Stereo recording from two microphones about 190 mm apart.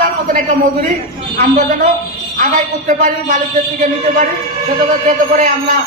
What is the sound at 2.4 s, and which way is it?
Speech, 40° right (ahead or behind).